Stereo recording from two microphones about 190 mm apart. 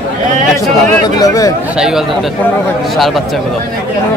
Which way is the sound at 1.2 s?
20° left (ahead or behind).